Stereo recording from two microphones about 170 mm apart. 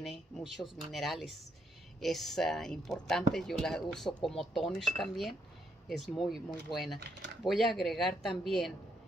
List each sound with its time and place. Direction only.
0.0 s speech: centre (ahead or behind)